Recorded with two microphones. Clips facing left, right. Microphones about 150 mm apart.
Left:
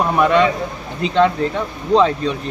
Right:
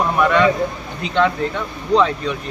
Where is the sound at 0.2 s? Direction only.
25° left (ahead or behind).